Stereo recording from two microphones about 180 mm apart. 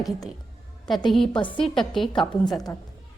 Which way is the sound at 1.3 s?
25° left (ahead or behind).